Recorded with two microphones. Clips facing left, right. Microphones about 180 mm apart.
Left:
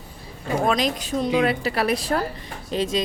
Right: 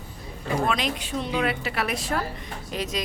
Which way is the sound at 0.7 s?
40° left (ahead or behind).